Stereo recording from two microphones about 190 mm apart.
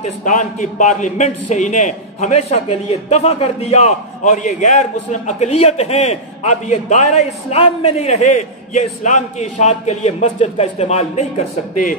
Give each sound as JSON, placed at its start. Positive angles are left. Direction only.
{"t": 0.0, "sound": "a man's voice", "side_deg": 40}